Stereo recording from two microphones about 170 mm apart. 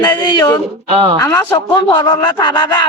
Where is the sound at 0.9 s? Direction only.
35° right (ahead or behind).